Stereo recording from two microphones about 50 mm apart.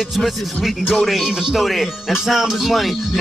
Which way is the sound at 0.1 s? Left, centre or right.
Centre.